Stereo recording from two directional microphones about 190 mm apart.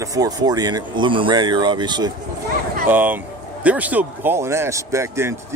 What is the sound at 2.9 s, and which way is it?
Speech, 10° right (ahead or behind).